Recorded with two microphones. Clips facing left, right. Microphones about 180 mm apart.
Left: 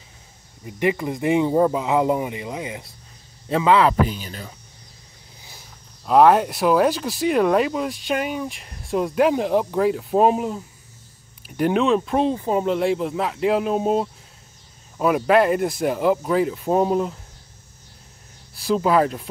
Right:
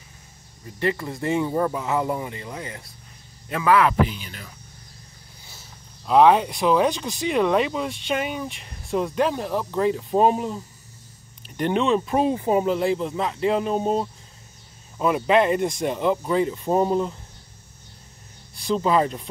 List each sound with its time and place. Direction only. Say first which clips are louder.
0.7 s a man's voice: left 3 dB; 15° left (ahead or behind); by 4.5 s 35° left (ahead or behind)
6.0 s speech: left 1 dB; 5° left (ahead or behind)
9.8 s speech: right 1 dB; 5° left (ahead or behind); by 12.6 s 15° right (ahead or behind)
12.6 s speech: left 1 dB; centre (ahead or behind)
18.5 s speech: left 2 dB; 5° left (ahead or behind)